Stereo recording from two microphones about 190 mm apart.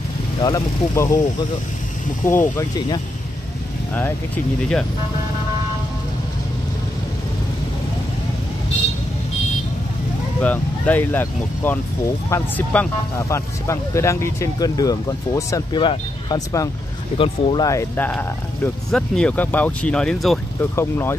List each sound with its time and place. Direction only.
0.4 s speech: 15° left (ahead or behind)
2.2 s speech: 10° left (ahead or behind)
10.4 s speech: 10° left (ahead or behind); by 17.6 s 30° left (ahead or behind)
17.6 s speech: 10° left (ahead or behind)
20.7 s speech: 15° left (ahead or behind)